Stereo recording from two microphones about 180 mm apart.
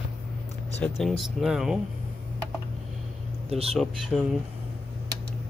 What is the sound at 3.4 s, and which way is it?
Speech, 35° right (ahead or behind).